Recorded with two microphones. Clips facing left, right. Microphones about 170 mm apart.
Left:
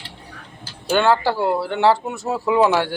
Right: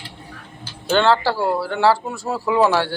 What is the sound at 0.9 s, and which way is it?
Speech, 15° left (ahead or behind).